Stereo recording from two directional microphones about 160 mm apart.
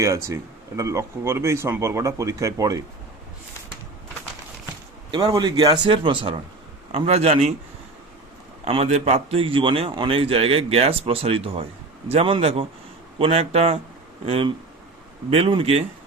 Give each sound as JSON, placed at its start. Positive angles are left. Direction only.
{"t": 0.0, "sound": "speech", "side_deg": -20}
{"t": 5.1, "sound": "a man's voice", "side_deg": -25}
{"t": 8.6, "sound": "a man's voice", "side_deg": -40}